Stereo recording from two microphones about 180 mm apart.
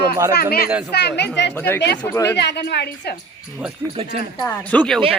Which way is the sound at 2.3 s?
65° left (ahead or behind).